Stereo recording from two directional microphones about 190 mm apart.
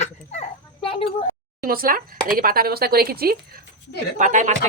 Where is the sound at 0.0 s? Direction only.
35° left (ahead or behind).